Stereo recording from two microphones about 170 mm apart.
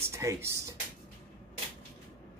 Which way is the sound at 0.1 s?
15° right (ahead or behind).